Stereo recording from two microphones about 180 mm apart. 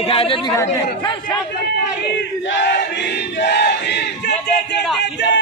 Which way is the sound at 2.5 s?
75° left (ahead or behind).